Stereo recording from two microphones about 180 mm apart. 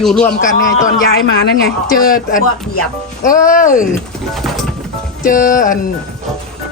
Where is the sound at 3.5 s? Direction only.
50° left (ahead or behind).